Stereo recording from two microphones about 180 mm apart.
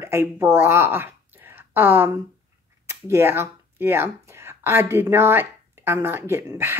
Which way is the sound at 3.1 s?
15° right (ahead or behind).